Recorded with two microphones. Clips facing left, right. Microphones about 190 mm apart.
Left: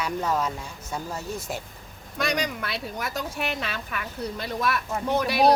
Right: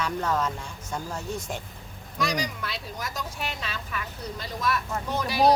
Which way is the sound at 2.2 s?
60° left (ahead or behind).